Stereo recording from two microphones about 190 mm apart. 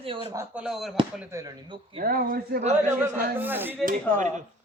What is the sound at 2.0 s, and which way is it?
Speech, 50° right (ahead or behind).